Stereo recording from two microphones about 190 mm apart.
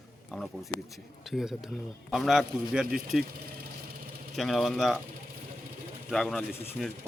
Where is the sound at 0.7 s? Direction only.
15° left (ahead or behind).